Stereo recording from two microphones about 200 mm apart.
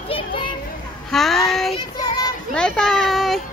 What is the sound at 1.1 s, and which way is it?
Child singing, centre (ahead or behind).